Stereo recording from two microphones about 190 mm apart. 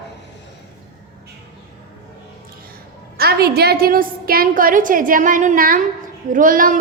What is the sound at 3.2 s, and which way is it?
A woman's voice, 55° right (ahead or behind).